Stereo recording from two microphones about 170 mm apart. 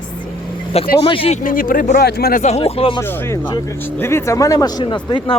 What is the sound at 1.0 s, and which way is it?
Speech, 35° left (ahead or behind).